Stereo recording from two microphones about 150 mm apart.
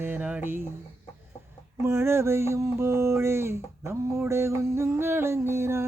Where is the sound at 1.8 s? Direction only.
15° right (ahead or behind).